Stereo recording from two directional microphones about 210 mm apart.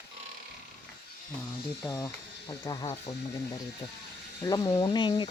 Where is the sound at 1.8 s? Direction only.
15° left (ahead or behind).